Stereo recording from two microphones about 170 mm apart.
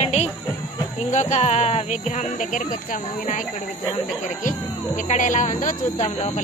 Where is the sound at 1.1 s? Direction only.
40° left (ahead or behind).